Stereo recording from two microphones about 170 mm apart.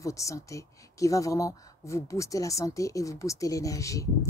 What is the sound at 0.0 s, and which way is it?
Speech, 20° left (ahead or behind).